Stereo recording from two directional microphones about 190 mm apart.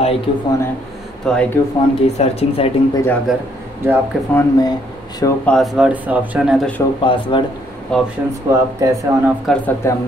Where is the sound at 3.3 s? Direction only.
Centre (ahead or behind).